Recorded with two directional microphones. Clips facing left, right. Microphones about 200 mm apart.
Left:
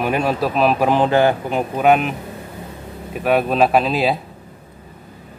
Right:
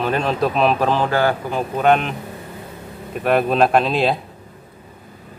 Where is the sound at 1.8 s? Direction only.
5° left (ahead or behind).